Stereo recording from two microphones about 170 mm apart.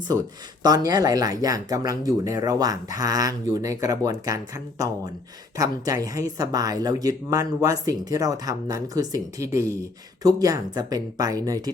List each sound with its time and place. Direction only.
0.6 s speech: 20° right (ahead or behind)